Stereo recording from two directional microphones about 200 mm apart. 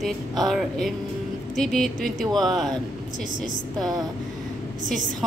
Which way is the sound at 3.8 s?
20° right (ahead or behind).